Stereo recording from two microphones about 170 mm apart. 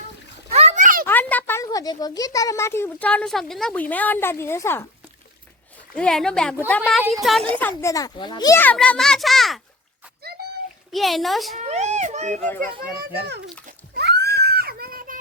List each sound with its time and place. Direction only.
0.5 s a sound: 40° right (ahead or behind)
1.0 s speech: 10° left (ahead or behind)
5.9 s speech: 5° left (ahead or behind)
7.5 s a child's voice: 10° left (ahead or behind)
8.5 s speech: 10° left (ahead or behind)
10.9 s speech: centre (ahead or behind)
11.5 s a sound: 40° right (ahead or behind)
12.4 s a child's voice: 10° left (ahead or behind)
13.9 s a sound: 70° right (ahead or behind); by 15.2 s 55° right (ahead or behind)